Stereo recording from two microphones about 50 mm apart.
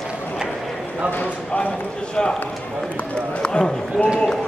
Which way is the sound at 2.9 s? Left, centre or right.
Left.